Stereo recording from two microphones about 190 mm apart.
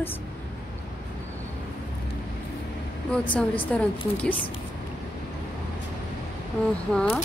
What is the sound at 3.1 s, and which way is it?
Speech, 5° left (ahead or behind).